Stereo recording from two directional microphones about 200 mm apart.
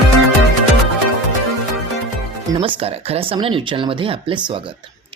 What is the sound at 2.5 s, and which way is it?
Speech, 25° right (ahead or behind).